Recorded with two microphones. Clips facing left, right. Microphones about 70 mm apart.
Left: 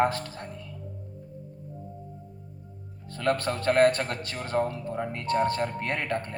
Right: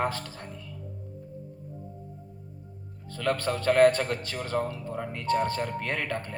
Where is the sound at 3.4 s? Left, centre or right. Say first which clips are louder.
Right 2 dB; left.